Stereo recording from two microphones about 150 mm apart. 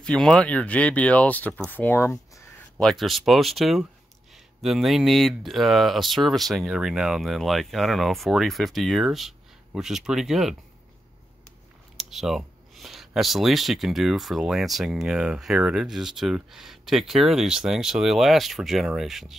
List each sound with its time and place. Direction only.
0.0 s speech: 5° left (ahead or behind)
2.8 s speech: centre (ahead or behind)
12.0 s speech: centre (ahead or behind)